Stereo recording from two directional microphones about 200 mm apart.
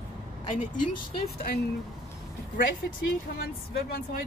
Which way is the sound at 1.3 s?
50° left (ahead or behind).